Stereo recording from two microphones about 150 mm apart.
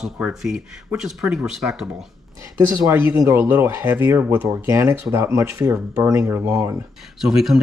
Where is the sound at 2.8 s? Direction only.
15° right (ahead or behind).